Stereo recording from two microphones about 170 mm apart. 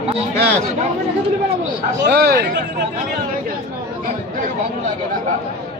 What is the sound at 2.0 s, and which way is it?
Speech, 70° right (ahead or behind).